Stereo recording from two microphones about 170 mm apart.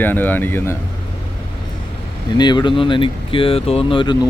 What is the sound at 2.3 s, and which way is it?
Speech, 25° left (ahead or behind).